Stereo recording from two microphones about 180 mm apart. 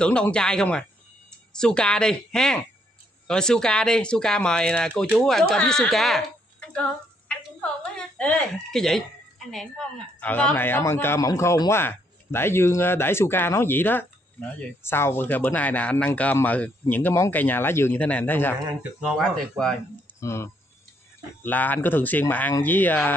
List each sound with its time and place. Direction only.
0.0 s speech: 5° left (ahead or behind)
18.8 s speech: 5° right (ahead or behind)
20.2 s speech: 15° left (ahead or behind)